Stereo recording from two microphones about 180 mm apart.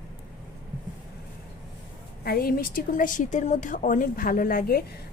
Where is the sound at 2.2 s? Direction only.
55° left (ahead or behind).